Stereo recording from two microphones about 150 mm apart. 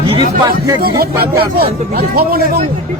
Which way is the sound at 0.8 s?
90° right.